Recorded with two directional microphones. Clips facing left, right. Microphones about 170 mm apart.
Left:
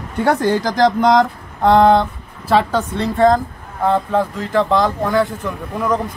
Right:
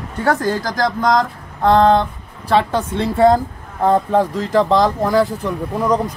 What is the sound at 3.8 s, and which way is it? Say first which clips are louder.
Speech: right 2 dB; 35° right (ahead or behind).